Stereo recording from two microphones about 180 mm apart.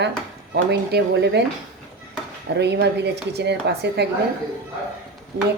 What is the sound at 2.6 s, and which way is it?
Speech, 70° right (ahead or behind).